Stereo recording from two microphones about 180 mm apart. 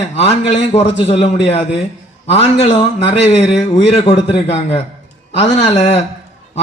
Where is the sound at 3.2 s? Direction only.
35° left (ahead or behind).